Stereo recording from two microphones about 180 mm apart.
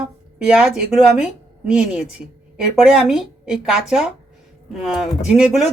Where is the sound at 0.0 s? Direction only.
5° right (ahead or behind).